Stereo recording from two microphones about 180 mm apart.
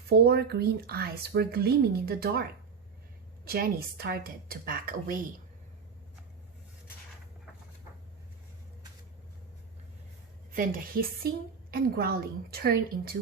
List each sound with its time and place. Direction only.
0.1 s a woman's voice: 65° right (ahead or behind)
3.4 s a woman's voice: 55° right (ahead or behind)
10.5 s a woman's voice: 50° right (ahead or behind)